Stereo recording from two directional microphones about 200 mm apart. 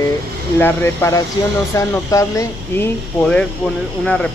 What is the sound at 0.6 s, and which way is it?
Speech, 10° left (ahead or behind).